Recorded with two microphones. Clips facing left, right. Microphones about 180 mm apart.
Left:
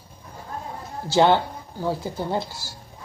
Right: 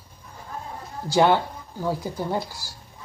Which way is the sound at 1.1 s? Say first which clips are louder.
Left 1 dB; 25° left (ahead or behind).